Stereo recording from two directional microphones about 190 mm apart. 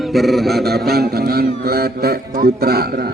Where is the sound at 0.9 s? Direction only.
55° right (ahead or behind).